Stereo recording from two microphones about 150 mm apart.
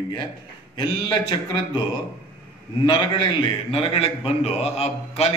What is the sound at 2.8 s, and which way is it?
A man's voice, 35° left (ahead or behind).